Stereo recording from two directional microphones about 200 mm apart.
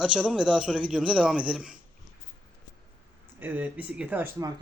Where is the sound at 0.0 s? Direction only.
5° right (ahead or behind).